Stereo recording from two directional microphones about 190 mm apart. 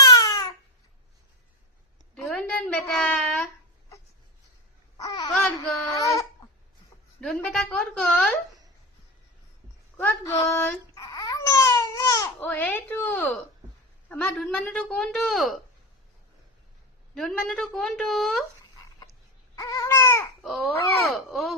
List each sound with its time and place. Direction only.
0.1 s babbling: 20° left (ahead or behind)
2.1 s a sound: 5° left (ahead or behind)
4.9 s babbling: 20° left (ahead or behind)
5.3 s a sound: centre (ahead or behind)
6.0 s a sound: 15° left (ahead or behind)
7.2 s speech: 5° left (ahead or behind)
10.0 s baby cry: 10° left (ahead or behind)
14.1 s speech: 5° left (ahead or behind)
17.2 s speech: centre (ahead or behind)
19.5 s baby cry: 15° left (ahead or behind)
20.4 s speech: centre (ahead or behind)